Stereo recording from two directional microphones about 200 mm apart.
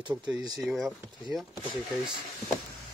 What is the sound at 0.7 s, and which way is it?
Speech, centre (ahead or behind).